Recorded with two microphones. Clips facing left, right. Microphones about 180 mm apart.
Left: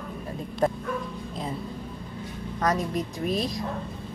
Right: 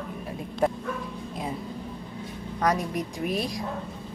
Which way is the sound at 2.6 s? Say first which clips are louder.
Even; 10° right (ahead or behind).